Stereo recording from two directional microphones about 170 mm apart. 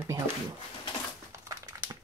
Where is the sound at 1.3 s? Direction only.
20° right (ahead or behind).